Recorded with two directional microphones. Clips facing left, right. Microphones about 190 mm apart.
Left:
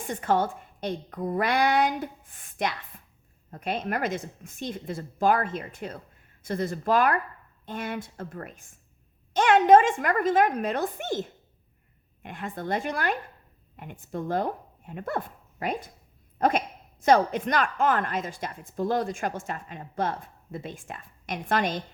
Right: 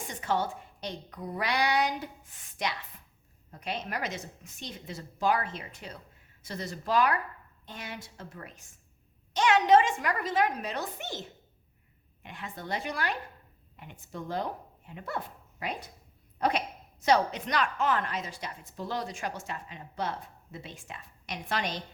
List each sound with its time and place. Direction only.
0.1 s speech: 50° left (ahead or behind)